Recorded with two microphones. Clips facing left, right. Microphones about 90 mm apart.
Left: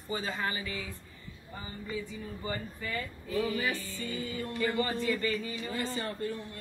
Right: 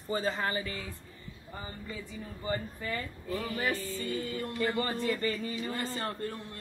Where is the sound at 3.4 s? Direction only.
45° right (ahead or behind).